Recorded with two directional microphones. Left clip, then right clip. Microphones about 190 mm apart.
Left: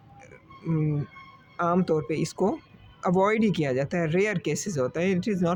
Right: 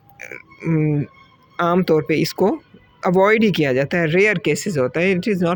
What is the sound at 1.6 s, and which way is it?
Speech, 25° right (ahead or behind).